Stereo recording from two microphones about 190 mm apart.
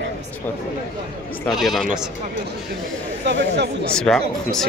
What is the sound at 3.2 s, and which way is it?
Speech, 60° right (ahead or behind).